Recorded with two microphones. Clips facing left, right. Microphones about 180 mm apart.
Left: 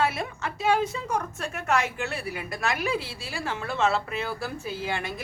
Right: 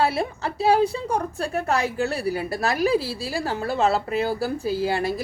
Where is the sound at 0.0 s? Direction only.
35° right (ahead or behind).